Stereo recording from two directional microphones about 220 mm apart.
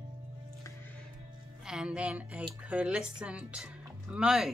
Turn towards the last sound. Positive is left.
turn(degrees=-5)  # may be behind; listen again after turning